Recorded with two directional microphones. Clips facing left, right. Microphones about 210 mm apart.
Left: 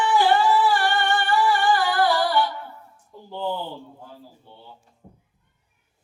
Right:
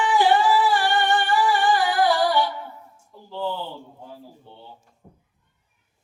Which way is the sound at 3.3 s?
15° left (ahead or behind).